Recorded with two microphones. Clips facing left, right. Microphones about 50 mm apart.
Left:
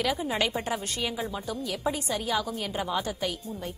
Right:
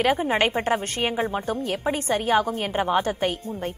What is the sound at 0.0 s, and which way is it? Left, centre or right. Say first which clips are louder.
A woman's voice: right 7 dB; right.